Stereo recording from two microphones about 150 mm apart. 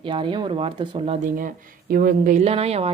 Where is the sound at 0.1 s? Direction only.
30° right (ahead or behind).